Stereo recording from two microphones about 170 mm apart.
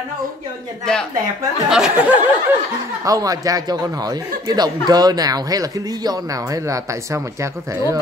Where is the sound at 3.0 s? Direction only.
20° right (ahead or behind).